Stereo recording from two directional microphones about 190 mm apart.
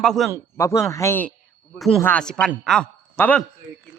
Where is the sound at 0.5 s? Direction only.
15° left (ahead or behind).